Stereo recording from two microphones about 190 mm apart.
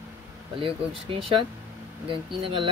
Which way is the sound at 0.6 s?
30° right (ahead or behind).